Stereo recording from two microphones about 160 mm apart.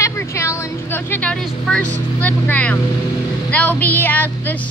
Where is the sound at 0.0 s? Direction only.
15° left (ahead or behind).